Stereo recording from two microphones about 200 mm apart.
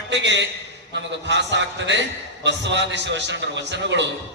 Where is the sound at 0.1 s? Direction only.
60° right (ahead or behind).